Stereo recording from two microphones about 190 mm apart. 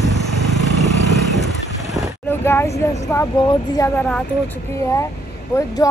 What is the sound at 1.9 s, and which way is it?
Speech, 10° left (ahead or behind).